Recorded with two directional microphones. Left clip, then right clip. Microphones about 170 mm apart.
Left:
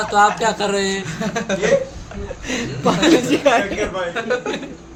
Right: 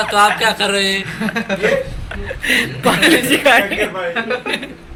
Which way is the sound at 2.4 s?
5° left (ahead or behind).